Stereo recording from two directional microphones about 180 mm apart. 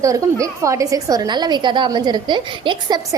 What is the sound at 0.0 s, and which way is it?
A woman's voice, 20° right (ahead or behind).